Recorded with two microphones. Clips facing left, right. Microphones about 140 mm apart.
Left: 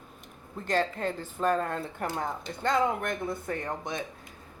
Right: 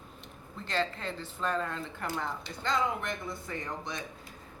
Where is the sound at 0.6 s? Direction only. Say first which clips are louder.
Left 5 dB; 45° left (ahead or behind).